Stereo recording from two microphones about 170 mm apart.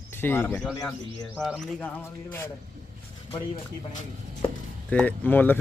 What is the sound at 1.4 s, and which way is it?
Bird, centre (ahead or behind).